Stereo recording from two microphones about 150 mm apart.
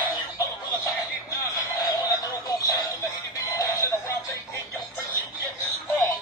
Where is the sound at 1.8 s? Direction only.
20° left (ahead or behind).